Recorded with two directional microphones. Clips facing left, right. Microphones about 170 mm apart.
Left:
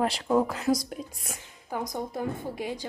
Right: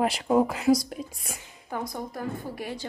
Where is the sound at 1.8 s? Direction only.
20° left (ahead or behind).